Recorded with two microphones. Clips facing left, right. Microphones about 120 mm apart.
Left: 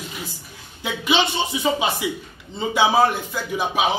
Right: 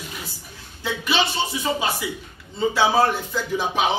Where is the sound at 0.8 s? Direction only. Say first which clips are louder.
Left 2 dB; 15° left (ahead or behind).